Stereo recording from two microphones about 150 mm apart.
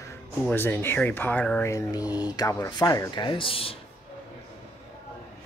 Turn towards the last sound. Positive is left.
turn(degrees=40)  # may be behind; listen again after turning